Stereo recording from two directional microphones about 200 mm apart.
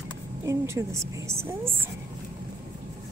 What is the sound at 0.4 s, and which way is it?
A woman's voice, 15° right (ahead or behind).